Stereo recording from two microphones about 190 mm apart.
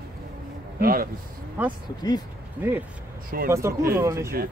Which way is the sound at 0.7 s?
50° right (ahead or behind).